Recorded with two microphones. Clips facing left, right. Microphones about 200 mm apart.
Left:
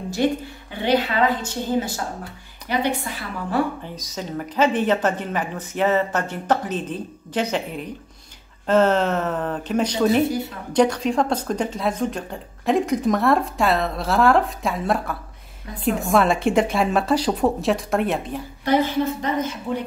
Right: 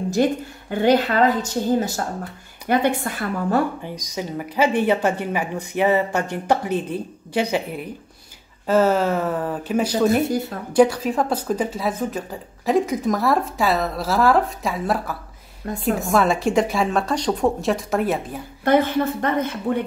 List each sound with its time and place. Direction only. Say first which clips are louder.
0.1 s a woman's voice: right 1 dB; 45° right (ahead or behind)
3.8 s a woman's voice: right 3 dB; 15° right (ahead or behind)
18.6 s a woman's voice: right 2 dB; 55° right (ahead or behind)